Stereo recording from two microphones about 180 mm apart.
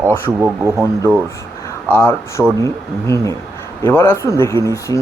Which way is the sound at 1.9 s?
10° left (ahead or behind).